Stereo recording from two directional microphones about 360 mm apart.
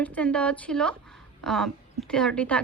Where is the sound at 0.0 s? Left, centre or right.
Centre.